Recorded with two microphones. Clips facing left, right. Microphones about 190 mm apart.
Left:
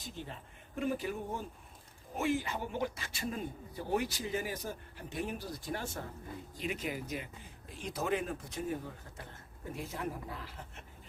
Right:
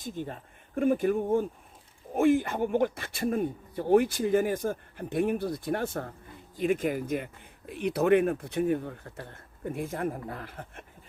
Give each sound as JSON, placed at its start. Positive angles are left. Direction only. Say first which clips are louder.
{"t": 0.0, "sound": "speech", "louder": "right 9 dB", "side_deg": -50}
{"t": 7.7, "sound": "speech", "louder": "right 12 dB", "side_deg": -65}